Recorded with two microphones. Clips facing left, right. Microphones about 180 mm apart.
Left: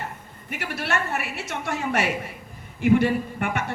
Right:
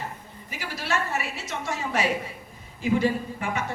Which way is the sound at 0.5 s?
65° left (ahead or behind).